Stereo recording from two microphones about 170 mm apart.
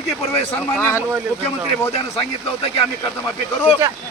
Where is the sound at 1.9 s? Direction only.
35° left (ahead or behind).